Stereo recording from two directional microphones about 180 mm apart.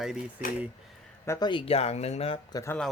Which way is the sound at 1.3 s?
25° left (ahead or behind).